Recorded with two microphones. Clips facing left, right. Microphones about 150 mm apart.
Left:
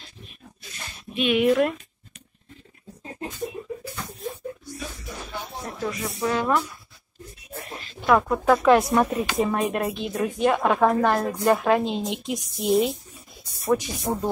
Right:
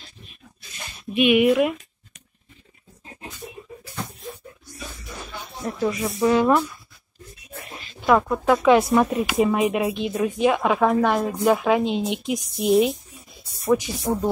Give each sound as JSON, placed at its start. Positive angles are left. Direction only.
{"t": 1.1, "sound": "speech", "side_deg": -10}
{"t": 5.9, "sound": "speech", "side_deg": -15}
{"t": 8.1, "sound": "speech", "side_deg": 0}
{"t": 13.4, "sound": "a sound", "side_deg": 0}
{"t": 14.1, "sound": "speech", "side_deg": 20}